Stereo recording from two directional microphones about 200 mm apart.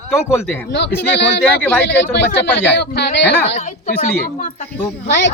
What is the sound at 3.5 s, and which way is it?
A woman's voice, 35° left (ahead or behind).